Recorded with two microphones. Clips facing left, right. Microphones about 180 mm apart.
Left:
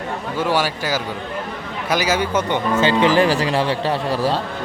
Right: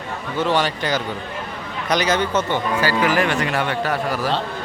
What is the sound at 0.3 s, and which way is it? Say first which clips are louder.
Speech: right 1 dB; 10° left (ahead or behind).